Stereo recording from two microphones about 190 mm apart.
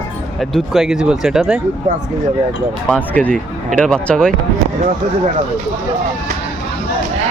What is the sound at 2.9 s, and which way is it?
Speech, 5° left (ahead or behind).